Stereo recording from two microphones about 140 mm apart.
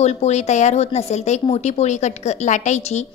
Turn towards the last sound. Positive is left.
turn(degrees=55)  # may be behind; listen again after turning